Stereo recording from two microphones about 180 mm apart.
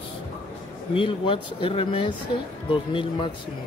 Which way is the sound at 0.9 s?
30° left (ahead or behind).